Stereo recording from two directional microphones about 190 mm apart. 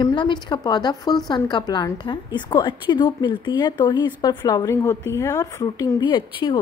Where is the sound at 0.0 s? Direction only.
25° left (ahead or behind).